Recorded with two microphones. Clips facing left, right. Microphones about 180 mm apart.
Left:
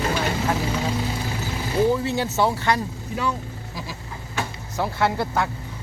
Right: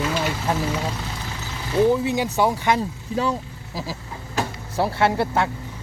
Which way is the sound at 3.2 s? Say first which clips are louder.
Right 3 dB; 35° right (ahead or behind).